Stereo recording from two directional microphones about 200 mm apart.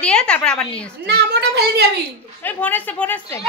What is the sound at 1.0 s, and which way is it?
Speech, 55° right (ahead or behind).